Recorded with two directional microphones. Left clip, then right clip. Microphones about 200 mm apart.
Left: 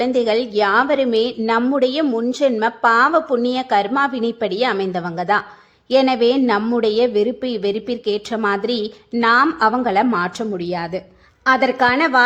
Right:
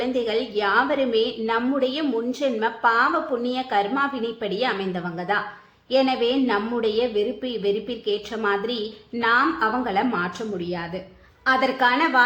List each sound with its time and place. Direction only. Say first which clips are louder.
0.0 s a woman's voice: left 7 dB; 50° left (ahead or behind)